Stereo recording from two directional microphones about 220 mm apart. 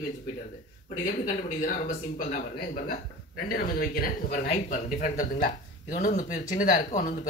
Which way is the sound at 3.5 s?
40° left (ahead or behind).